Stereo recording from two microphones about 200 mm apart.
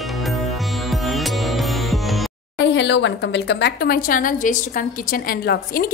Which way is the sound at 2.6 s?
60° left (ahead or behind).